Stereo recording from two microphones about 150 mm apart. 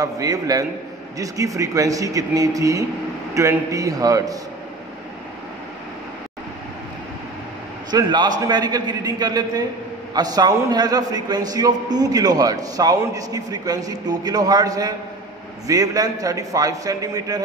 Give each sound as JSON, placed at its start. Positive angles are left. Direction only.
{"t": 0.0, "sound": "a man's voice", "side_deg": -25}
{"t": 7.9, "sound": "a man's voice", "side_deg": -30}